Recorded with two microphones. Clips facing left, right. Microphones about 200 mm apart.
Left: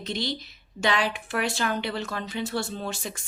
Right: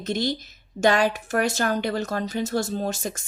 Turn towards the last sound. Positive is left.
turn(degrees=-45)  # may be behind; listen again after turning